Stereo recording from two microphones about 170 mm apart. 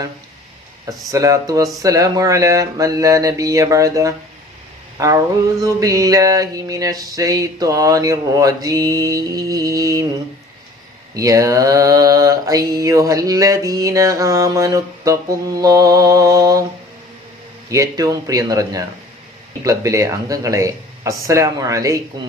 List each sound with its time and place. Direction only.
0.9 s mantra: 20° right (ahead or behind)
4.9 s a sound: 20° right (ahead or behind)
5.8 s mantra: 20° right (ahead or behind)
11.1 s mantra: 20° right (ahead or behind)
17.7 s mantra: 20° right (ahead or behind)